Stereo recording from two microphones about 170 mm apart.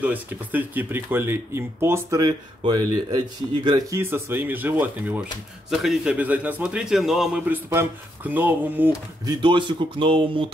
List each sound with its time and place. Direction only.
0.0 s a man's voice: 10° right (ahead or behind)
4.0 s a man's voice: 15° right (ahead or behind)
9.2 s speech: 30° right (ahead or behind)